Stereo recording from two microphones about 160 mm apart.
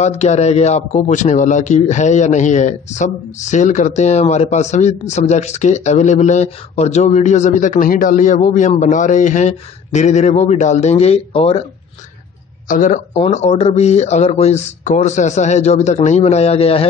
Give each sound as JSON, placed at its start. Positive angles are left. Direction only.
{"t": 0.2, "sound": "a man's voice", "side_deg": 45}
{"t": 12.6, "sound": "speech", "side_deg": 55}
{"t": 13.1, "sound": "a man's voice", "side_deg": 40}